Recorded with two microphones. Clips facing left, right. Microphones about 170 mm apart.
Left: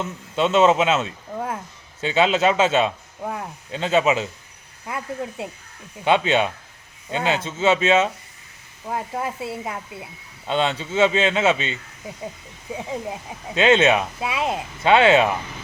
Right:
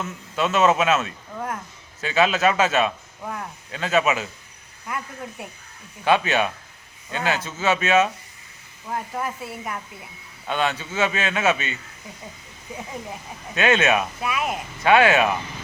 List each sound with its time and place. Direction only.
0.0 s speech: 25° left (ahead or behind)
6.1 s speech: 25° left (ahead or behind)
13.5 s speech: 25° left (ahead or behind)